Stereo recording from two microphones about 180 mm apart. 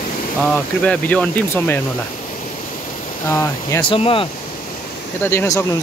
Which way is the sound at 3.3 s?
15° left (ahead or behind).